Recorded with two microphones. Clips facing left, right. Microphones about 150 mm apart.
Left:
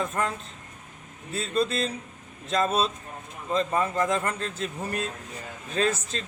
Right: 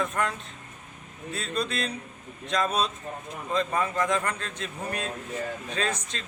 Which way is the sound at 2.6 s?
5° left (ahead or behind).